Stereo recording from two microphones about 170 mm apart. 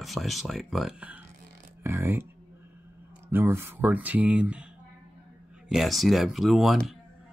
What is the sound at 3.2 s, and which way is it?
Speech, 15° right (ahead or behind).